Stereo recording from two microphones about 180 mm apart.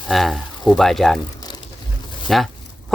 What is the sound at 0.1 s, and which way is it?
Speech, centre (ahead or behind).